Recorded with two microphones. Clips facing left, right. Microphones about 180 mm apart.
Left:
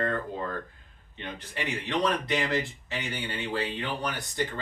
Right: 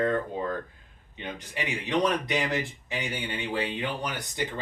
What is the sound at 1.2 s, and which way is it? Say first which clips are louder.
Speech: right 1 dB; 15° right (ahead or behind).